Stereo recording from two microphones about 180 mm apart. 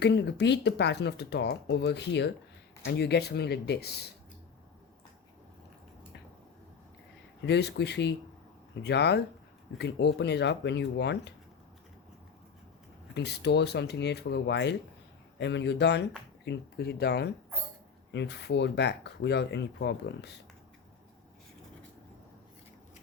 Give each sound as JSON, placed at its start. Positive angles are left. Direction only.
{"t": 0.0, "sound": "speech", "side_deg": 70}
{"t": 7.4, "sound": "speech", "side_deg": 70}
{"t": 13.1, "sound": "speech", "side_deg": 65}